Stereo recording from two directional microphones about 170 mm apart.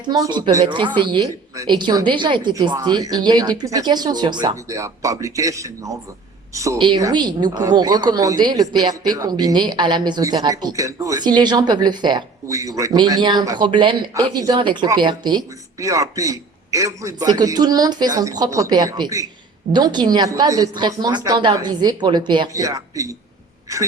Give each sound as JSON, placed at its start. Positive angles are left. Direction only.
{"t": 0.0, "sound": "a woman's voice", "side_deg": -25}